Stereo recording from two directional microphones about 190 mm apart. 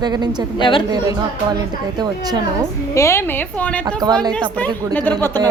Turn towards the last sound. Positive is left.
turn(degrees=10)  # may be behind; listen again after turning